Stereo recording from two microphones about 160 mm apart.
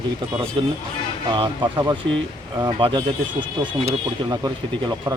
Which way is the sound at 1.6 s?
25° right (ahead or behind).